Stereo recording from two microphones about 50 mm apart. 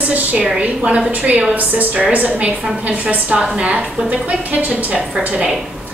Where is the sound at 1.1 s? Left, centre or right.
Right.